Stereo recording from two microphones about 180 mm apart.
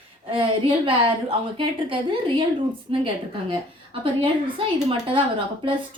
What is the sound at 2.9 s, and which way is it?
A woman's voice, 30° right (ahead or behind).